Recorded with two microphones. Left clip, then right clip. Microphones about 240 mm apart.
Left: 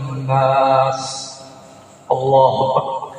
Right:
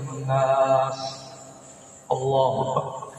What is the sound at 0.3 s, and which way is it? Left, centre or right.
Mantra, left.